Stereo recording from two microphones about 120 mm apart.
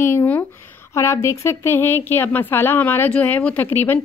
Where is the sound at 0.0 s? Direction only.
20° left (ahead or behind).